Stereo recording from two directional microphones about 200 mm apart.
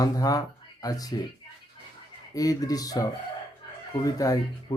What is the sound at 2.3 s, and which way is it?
Speech, 20° left (ahead or behind).